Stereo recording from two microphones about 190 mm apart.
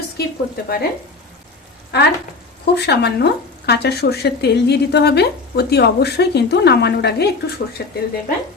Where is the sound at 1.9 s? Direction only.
60° left (ahead or behind).